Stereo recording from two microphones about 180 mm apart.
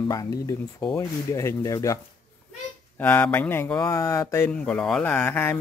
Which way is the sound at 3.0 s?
10° left (ahead or behind).